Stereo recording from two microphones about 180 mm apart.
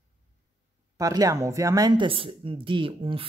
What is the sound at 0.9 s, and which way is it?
Speech, 20° right (ahead or behind).